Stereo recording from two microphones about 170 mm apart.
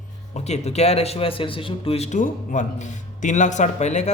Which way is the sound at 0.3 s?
40° left (ahead or behind).